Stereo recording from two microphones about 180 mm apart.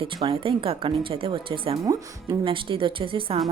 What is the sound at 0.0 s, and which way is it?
A woman's voice, 30° right (ahead or behind).